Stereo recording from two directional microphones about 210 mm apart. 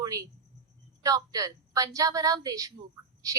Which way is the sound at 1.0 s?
15° right (ahead or behind).